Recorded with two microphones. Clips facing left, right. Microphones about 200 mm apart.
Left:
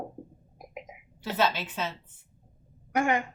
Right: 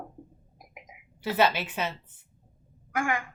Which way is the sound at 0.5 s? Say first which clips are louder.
Left 8 dB; 25° left (ahead or behind).